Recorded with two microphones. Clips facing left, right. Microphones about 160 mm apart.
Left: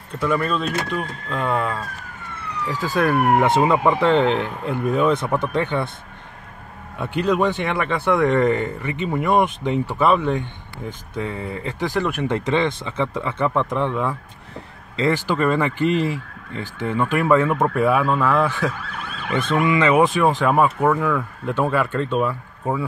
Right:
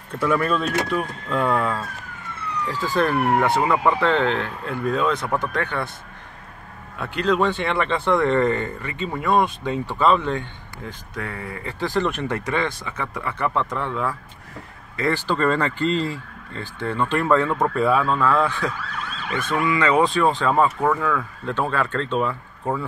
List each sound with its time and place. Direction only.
0.2 s speech: 5° right (ahead or behind)
2.7 s speech: 15° left (ahead or behind)
7.0 s speech: 15° left (ahead or behind)
12.3 s speech: 20° left (ahead or behind)